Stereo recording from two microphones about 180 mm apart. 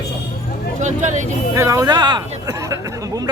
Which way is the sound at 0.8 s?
40° right (ahead or behind).